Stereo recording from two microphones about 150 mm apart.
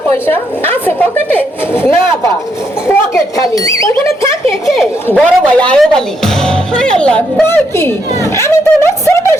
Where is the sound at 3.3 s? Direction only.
20° left (ahead or behind).